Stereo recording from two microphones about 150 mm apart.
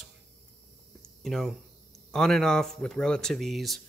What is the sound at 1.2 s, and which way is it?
Speech, centre (ahead or behind).